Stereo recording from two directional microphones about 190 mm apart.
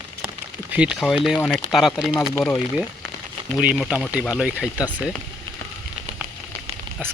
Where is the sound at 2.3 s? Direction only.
10° left (ahead or behind).